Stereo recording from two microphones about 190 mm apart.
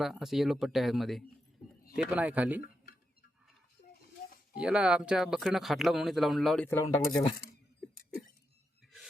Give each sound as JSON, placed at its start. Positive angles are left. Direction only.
{"t": 0.0, "sound": "a man's voice", "side_deg": 0}
{"t": 4.5, "sound": "speech", "side_deg": -5}
{"t": 6.7, "sound": "speech", "side_deg": 15}